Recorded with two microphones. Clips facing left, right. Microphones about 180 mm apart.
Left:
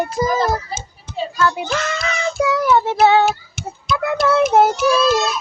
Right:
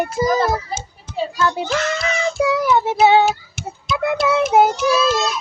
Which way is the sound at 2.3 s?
20° right (ahead or behind).